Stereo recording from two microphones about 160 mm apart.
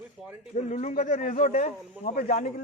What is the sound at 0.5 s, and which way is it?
Speech, 50° left (ahead or behind).